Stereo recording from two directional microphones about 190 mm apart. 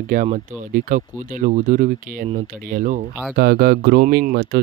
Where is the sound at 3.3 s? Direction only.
55° right (ahead or behind).